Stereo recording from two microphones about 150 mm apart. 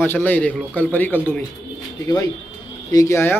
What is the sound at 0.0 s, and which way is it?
Speech, 15° left (ahead or behind).